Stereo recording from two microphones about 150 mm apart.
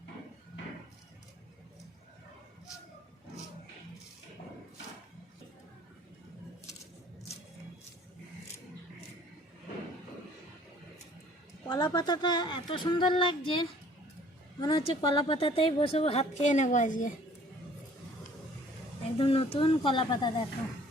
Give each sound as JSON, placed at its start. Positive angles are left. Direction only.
{"t": 11.6, "sound": "a woman's voice", "side_deg": 25}
{"t": 19.1, "sound": "a woman's voice", "side_deg": 40}